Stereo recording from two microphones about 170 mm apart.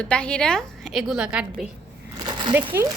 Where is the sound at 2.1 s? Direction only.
25° right (ahead or behind).